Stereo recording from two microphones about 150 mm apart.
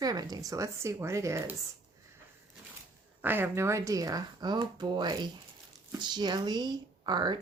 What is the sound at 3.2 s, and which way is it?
Speech, 15° right (ahead or behind).